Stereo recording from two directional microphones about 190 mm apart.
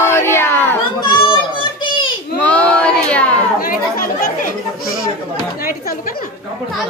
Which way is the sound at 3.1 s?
5° left (ahead or behind).